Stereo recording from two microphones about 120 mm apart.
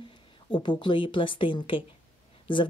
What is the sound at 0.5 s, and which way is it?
Speech, 40° left (ahead or behind).